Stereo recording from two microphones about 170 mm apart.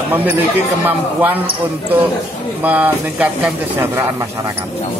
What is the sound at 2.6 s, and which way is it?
A man's voice, 10° right (ahead or behind).